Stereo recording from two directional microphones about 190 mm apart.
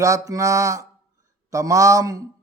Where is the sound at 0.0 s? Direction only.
15° right (ahead or behind).